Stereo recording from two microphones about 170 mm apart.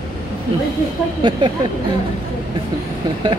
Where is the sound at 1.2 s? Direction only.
30° right (ahead or behind).